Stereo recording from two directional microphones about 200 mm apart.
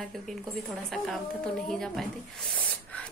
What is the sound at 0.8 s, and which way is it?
A woman's voice, centre (ahead or behind).